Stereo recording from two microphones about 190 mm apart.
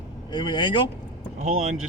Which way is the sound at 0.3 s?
25° left (ahead or behind).